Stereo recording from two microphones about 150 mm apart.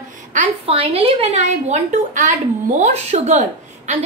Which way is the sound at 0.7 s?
40° right (ahead or behind).